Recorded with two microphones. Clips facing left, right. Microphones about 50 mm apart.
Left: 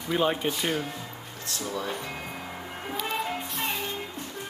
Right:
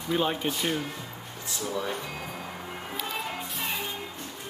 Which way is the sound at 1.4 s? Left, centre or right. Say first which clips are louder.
Right 1 dB; centre.